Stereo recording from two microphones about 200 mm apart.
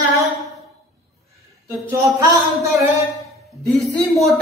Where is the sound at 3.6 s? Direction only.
5° left (ahead or behind).